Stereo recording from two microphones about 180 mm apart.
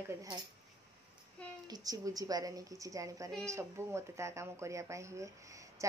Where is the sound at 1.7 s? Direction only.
20° right (ahead or behind).